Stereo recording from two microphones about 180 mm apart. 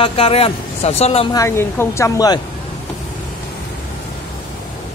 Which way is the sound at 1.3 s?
15° left (ahead or behind).